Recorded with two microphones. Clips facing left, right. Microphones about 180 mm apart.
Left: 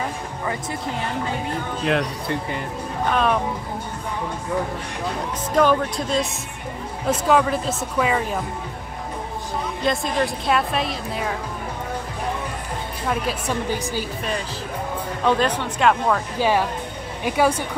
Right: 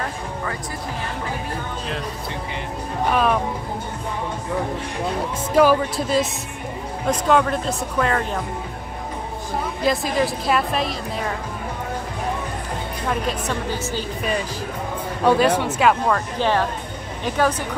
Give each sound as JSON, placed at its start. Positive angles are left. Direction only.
{"t": 1.9, "sound": "speech", "side_deg": 65}
{"t": 3.1, "sound": "speech", "side_deg": -5}
{"t": 5.6, "sound": "speech", "side_deg": -5}
{"t": 9.8, "sound": "speech", "side_deg": -5}
{"t": 13.1, "sound": "a woman's voice", "side_deg": 10}
{"t": 15.2, "sound": "speech", "side_deg": -10}
{"t": 16.3, "sound": "a woman's voice", "side_deg": 10}